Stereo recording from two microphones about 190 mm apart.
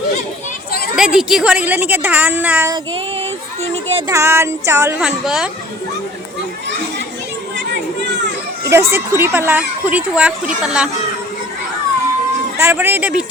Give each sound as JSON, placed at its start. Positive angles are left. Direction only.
{"t": 0.9, "sound": "speech", "side_deg": -5}
{"t": 3.6, "sound": "speech", "side_deg": -35}
{"t": 4.1, "sound": "speech", "side_deg": -15}
{"t": 8.6, "sound": "speech", "side_deg": -15}
{"t": 12.5, "sound": "speech", "side_deg": -10}